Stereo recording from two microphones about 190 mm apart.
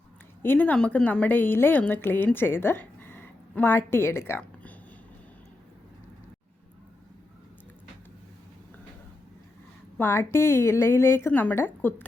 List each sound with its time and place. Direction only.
0.4 s a woman's voice: 10° left (ahead or behind)
10.0 s a woman's voice: 10° left (ahead or behind)